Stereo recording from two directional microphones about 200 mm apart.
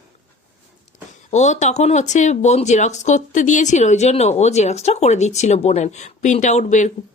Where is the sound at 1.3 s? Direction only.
35° left (ahead or behind).